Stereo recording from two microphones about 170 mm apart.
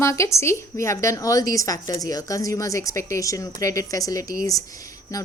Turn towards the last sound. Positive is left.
turn(degrees=20)  # may be behind; listen again after turning